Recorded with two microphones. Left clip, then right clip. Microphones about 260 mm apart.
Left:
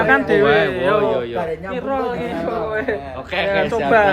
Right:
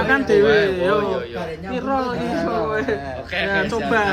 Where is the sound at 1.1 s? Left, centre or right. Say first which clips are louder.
Left 4 dB; centre.